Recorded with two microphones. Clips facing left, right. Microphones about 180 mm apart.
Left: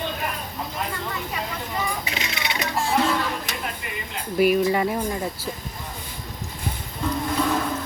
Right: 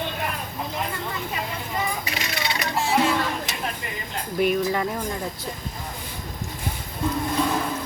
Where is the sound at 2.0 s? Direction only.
25° left (ahead or behind).